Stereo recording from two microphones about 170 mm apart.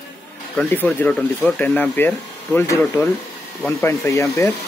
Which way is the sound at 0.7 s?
10° left (ahead or behind).